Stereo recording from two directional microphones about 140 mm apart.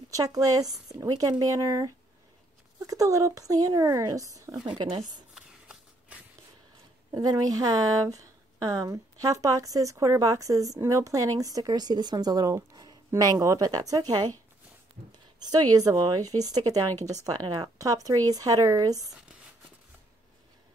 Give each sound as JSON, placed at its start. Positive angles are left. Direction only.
{"t": 0.1, "sound": "a woman's voice", "side_deg": -25}
{"t": 2.9, "sound": "a woman's voice", "side_deg": -25}
{"t": 5.3, "sound": "a sound", "side_deg": -5}
{"t": 7.1, "sound": "a woman's voice", "side_deg": -25}
{"t": 15.4, "sound": "a woman's voice", "side_deg": -25}